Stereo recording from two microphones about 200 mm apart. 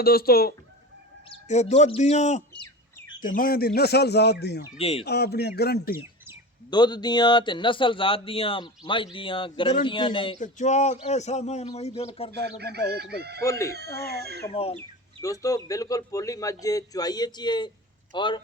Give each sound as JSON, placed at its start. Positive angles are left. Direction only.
{"t": 0.0, "sound": "speech", "side_deg": 50}
{"t": 1.5, "sound": "speech", "side_deg": 35}
{"t": 4.8, "sound": "a man's voice", "side_deg": 30}
{"t": 5.0, "sound": "speech", "side_deg": 55}
{"t": 6.7, "sound": "a man's voice", "side_deg": 20}
{"t": 10.4, "sound": "speech", "side_deg": 35}
{"t": 12.5, "sound": "chicken", "side_deg": -55}
{"t": 13.4, "sound": "a man's voice", "side_deg": 15}
{"t": 13.7, "sound": "chicken", "side_deg": -55}
{"t": 14.5, "sound": "a man's voice", "side_deg": 30}
{"t": 15.2, "sound": "a man's voice", "side_deg": 15}